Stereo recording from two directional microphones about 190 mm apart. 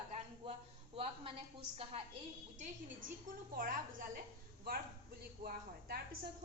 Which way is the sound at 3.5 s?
45° right (ahead or behind).